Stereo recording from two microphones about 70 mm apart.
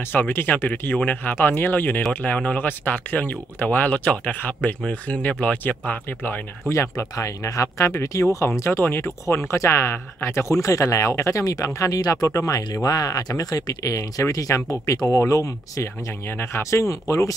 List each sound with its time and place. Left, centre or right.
0.1 s speech: left
6.7 s speech: left
11.4 s speech: left
16.3 s speech: left